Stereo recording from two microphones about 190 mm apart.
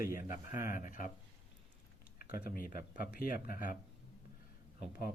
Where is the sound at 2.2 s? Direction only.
50° left (ahead or behind).